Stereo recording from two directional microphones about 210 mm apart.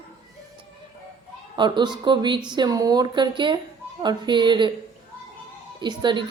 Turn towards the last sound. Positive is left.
turn(degrees=-20)  # may be behind; listen again after turning